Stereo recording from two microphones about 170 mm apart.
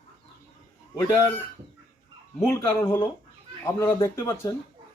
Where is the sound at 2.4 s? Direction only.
15° left (ahead or behind).